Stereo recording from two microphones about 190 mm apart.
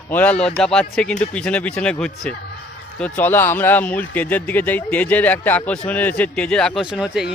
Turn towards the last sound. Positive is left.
turn(degrees=-5)  # may be behind; listen again after turning